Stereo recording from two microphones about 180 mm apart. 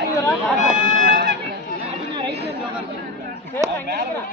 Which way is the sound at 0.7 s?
45° right (ahead or behind).